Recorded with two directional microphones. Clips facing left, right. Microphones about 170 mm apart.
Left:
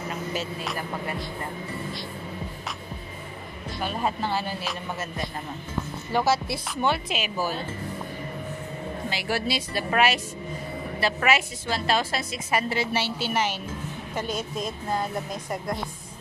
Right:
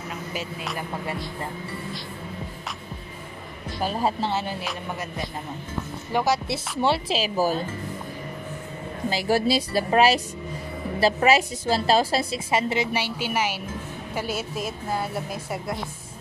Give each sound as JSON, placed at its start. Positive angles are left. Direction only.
{"t": 0.3, "sound": "a woman's voice", "side_deg": -10}
{"t": 3.8, "sound": "a woman's voice", "side_deg": -30}
{"t": 6.1, "sound": "a woman's voice", "side_deg": -15}
{"t": 6.8, "sound": "a woman's voice", "side_deg": -30}
{"t": 9.1, "sound": "a woman's voice", "side_deg": -40}